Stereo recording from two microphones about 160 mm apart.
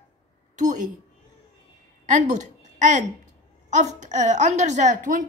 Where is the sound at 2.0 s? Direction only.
50° right (ahead or behind).